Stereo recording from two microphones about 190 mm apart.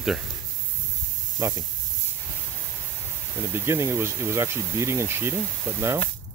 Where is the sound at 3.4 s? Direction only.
15° right (ahead or behind).